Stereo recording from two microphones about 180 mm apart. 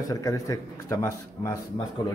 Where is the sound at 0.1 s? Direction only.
20° left (ahead or behind).